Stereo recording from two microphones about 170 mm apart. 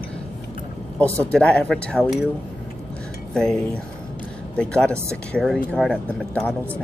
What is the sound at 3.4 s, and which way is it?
Speech, 5° left (ahead or behind).